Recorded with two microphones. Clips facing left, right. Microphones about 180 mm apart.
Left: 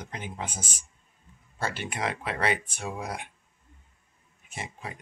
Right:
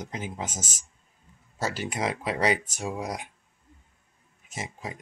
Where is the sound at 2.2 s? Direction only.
40° right (ahead or behind).